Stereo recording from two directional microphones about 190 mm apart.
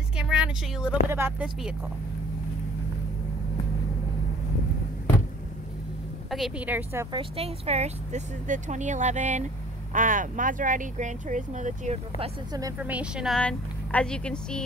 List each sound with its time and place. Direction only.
0.2 s a sound: 5° right (ahead or behind)
1.1 s a woman's voice: 10° right (ahead or behind)
6.3 s a woman's voice: 5° right (ahead or behind)
7.1 s speech: 30° right (ahead or behind)
12.7 s speech: 5° right (ahead or behind)